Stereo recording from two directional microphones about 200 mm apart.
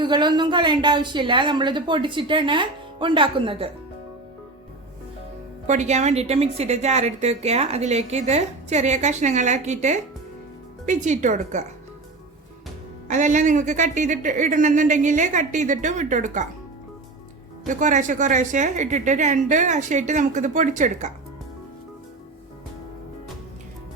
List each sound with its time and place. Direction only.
0.0 s a woman's voice: 20° right (ahead or behind)
5.6 s a woman's voice: 35° right (ahead or behind)
13.1 s a woman's voice: 40° right (ahead or behind)
17.7 s a woman's voice: 40° right (ahead or behind)